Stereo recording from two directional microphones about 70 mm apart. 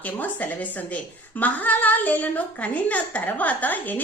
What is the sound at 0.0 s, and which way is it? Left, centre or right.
A woman's voice, left.